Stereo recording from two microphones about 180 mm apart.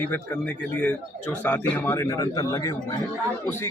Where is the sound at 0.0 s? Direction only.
10° left (ahead or behind).